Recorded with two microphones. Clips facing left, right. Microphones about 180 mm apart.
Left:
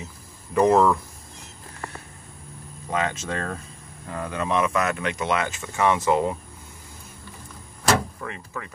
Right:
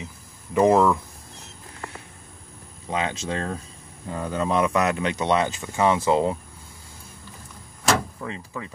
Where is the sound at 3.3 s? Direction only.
20° right (ahead or behind).